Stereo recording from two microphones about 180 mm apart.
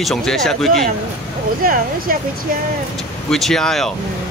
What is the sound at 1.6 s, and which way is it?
Speech, 55° right (ahead or behind).